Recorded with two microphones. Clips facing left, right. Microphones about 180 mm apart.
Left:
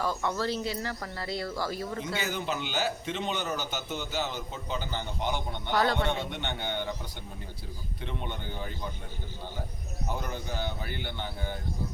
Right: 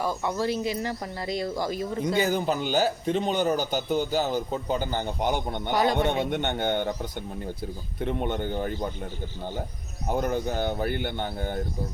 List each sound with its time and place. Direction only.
0.0 s speech: 15° right (ahead or behind)
2.1 s a man's voice: 40° right (ahead or behind)
5.7 s speech: 15° right (ahead or behind)
6.3 s speech: 50° right (ahead or behind)
10.1 s speech: 50° right (ahead or behind)